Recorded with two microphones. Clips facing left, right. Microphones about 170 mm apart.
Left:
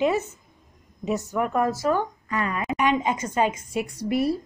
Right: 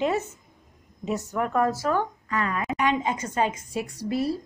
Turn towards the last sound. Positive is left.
turn(degrees=15)  # may be behind; listen again after turning